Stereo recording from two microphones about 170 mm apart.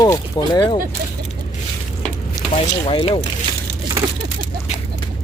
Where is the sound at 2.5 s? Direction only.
35° left (ahead or behind).